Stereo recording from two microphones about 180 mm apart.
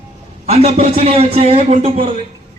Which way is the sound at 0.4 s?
35° right (ahead or behind).